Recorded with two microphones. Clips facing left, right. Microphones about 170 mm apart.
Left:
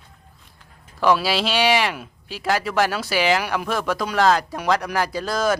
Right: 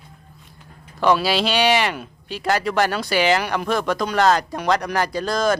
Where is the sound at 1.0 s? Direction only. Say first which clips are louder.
Right 1 dB; centre (ahead or behind).